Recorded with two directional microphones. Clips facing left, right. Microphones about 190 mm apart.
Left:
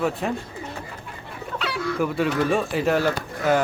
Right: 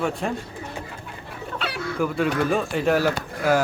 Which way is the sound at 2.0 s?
Centre (ahead or behind).